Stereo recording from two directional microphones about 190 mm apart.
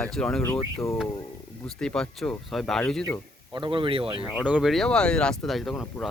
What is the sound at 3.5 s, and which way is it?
Speech, 25° right (ahead or behind).